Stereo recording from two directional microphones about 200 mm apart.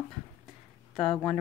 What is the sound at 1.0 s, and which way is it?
Speech, centre (ahead or behind).